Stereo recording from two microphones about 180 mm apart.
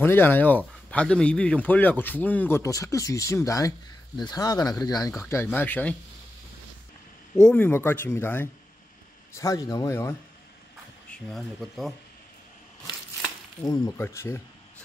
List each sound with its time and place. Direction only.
0.0 s a man's voice: 10° left (ahead or behind)
7.4 s a man's voice: 10° left (ahead or behind)
11.1 s speech: centre (ahead or behind)
13.6 s a man's voice: 20° left (ahead or behind)